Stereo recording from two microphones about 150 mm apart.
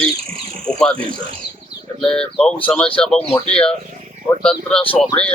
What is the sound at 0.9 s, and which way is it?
Speech, 35° right (ahead or behind).